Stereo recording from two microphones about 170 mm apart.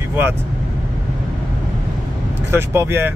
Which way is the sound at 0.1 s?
15° right (ahead or behind).